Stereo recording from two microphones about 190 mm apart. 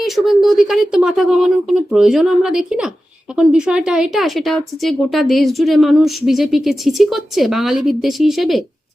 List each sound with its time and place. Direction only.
0.0 s a woman's voice: centre (ahead or behind)